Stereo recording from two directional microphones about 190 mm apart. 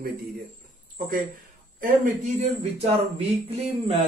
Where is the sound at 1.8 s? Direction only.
35° right (ahead or behind).